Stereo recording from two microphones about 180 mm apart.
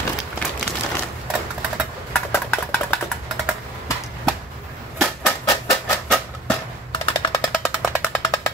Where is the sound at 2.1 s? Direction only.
10° left (ahead or behind).